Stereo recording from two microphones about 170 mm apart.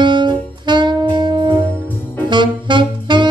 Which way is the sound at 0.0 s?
25° right (ahead or behind).